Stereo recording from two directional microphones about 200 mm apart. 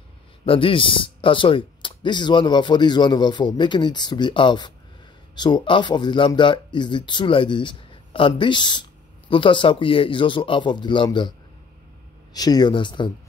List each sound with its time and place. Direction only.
0.5 s speech: 25° left (ahead or behind)
12.4 s speech: 20° left (ahead or behind)